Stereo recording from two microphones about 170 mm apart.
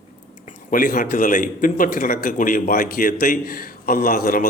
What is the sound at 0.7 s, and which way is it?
A man's voice, 55° left (ahead or behind).